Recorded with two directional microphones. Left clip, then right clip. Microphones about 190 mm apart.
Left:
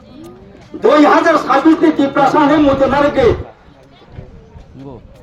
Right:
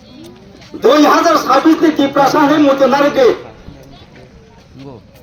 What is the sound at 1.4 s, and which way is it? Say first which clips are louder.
Music: even; 50° right (ahead or behind).